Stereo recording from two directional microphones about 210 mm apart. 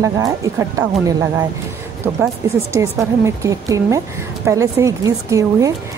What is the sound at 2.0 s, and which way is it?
A woman's voice, 10° right (ahead or behind).